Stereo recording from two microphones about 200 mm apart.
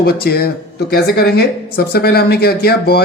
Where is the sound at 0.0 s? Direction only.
50° left (ahead or behind).